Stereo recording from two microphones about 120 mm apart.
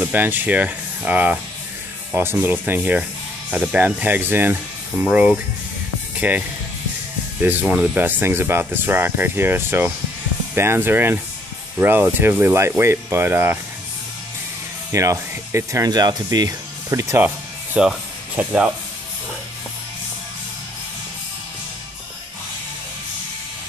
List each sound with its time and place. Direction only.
0.0 s speech: 15° right (ahead or behind)
7.4 s speech: 10° right (ahead or behind)
14.9 s speech: 25° right (ahead or behind)
17.7 s speech: 10° right (ahead or behind)